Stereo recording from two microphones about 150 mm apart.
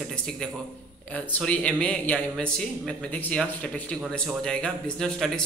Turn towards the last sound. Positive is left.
turn(degrees=5)  # may be behind; listen again after turning